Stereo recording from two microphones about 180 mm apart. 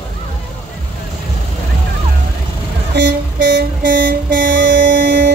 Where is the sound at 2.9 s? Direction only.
70° right (ahead or behind).